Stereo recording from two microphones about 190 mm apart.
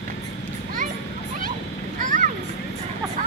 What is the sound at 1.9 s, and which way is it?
Vehicle, 45° right (ahead or behind).